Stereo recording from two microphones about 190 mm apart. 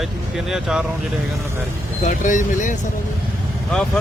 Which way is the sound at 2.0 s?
40° left (ahead or behind).